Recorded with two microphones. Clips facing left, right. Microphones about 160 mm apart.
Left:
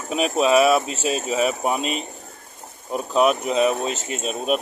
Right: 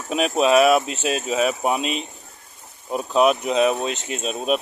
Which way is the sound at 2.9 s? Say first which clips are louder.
Right 1 dB; 10° right (ahead or behind).